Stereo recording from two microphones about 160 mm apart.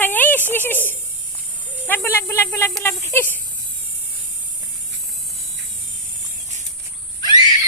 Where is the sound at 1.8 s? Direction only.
15° left (ahead or behind).